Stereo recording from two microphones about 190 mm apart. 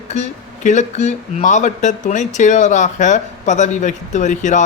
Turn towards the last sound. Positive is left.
turn(degrees=40)  # may be behind; listen again after turning